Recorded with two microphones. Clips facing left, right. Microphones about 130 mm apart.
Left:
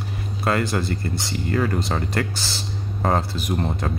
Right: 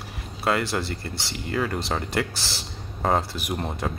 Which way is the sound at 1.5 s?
5° right (ahead or behind).